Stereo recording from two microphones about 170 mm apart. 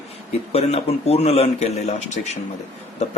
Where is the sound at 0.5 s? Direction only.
35° left (ahead or behind).